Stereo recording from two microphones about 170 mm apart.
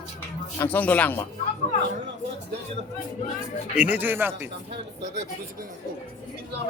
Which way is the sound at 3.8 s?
10° right (ahead or behind).